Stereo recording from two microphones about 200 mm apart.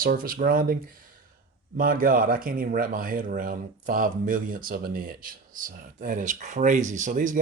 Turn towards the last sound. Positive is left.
turn(degrees=-40)  # may be behind; listen again after turning